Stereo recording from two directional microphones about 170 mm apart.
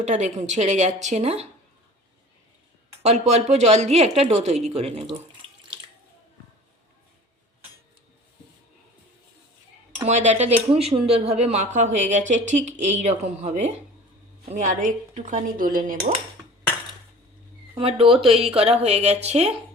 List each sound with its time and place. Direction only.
0.0 s speech: 45° right (ahead or behind)
3.0 s speech: 40° right (ahead or behind)
10.0 s speech: 45° right (ahead or behind)
17.7 s speech: 35° right (ahead or behind)